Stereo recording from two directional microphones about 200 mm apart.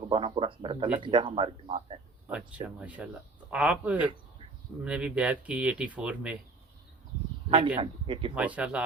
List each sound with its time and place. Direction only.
0.0 s speech: 25° right (ahead or behind)
2.2 s speech: 5° right (ahead or behind)
7.8 s speech: 25° right (ahead or behind)
8.4 s speech: 5° right (ahead or behind)